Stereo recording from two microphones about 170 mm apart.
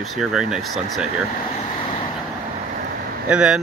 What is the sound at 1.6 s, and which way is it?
Vehicle, 35° left (ahead or behind).